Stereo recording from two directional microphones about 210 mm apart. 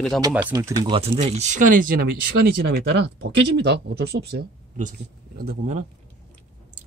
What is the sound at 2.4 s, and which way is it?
Speech, 50° right (ahead or behind).